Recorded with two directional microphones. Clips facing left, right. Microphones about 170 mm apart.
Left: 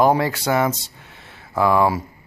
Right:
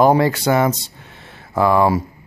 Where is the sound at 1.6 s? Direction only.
5° left (ahead or behind).